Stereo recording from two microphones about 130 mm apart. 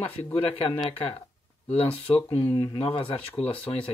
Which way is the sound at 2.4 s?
20° left (ahead or behind).